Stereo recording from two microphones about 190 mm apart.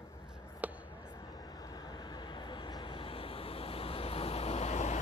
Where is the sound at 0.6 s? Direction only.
10° right (ahead or behind).